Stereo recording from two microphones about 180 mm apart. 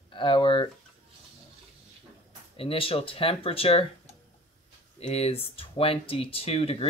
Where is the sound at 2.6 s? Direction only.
30° left (ahead or behind).